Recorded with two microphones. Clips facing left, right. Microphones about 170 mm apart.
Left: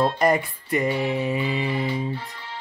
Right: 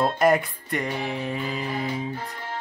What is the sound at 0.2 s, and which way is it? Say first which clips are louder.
Mantra: right 1 dB; centre (ahead or behind).